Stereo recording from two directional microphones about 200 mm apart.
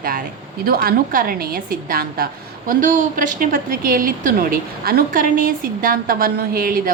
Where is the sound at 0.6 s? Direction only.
45° right (ahead or behind).